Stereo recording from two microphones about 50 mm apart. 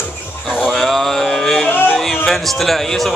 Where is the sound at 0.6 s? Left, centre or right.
Centre.